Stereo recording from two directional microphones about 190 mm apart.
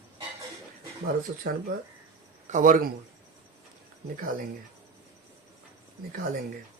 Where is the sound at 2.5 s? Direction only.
45° right (ahead or behind).